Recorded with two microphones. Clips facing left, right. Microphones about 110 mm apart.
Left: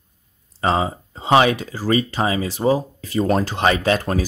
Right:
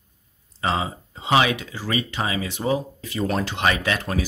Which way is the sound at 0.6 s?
40° left (ahead or behind).